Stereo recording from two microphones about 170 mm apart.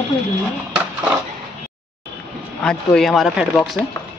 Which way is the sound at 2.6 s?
5° left (ahead or behind).